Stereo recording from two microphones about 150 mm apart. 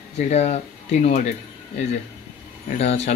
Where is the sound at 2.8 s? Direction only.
45° left (ahead or behind).